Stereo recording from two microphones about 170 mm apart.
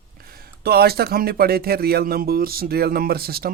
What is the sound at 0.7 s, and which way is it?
Speech, 65° right (ahead or behind).